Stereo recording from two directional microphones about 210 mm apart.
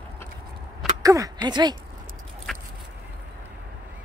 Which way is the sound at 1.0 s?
15° right (ahead or behind).